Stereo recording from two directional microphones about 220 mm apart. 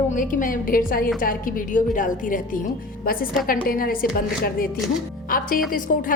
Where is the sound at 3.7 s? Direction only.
40° left (ahead or behind).